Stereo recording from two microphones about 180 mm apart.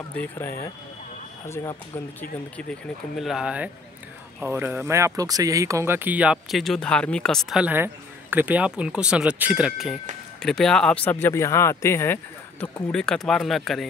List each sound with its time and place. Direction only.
0.1 s speech: 10° left (ahead or behind)
1.5 s speech: 20° left (ahead or behind)
2.5 s speech: centre (ahead or behind)
12.9 s speech: 5° left (ahead or behind)